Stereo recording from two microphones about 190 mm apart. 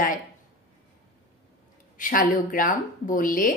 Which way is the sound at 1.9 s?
45° left (ahead or behind).